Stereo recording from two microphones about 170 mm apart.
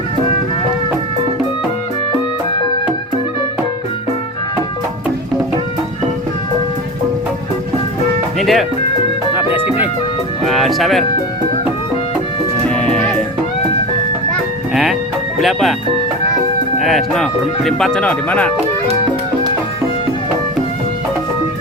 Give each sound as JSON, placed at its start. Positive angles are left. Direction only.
{"t": 8.4, "sound": "music", "side_deg": 0}
{"t": 9.3, "sound": "music", "side_deg": -10}
{"t": 10.4, "sound": "speech", "side_deg": 0}
{"t": 12.6, "sound": "music", "side_deg": 5}
{"t": 15.4, "sound": "speech", "side_deg": 0}
{"t": 16.8, "sound": "speech", "side_deg": 0}